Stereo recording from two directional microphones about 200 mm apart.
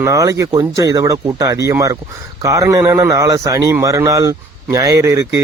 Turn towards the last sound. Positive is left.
turn(degrees=-15)  # may be behind; listen again after turning